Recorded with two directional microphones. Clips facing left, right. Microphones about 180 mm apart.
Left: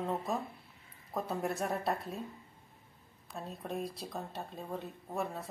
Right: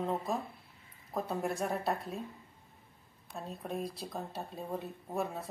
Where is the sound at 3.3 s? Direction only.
Centre (ahead or behind).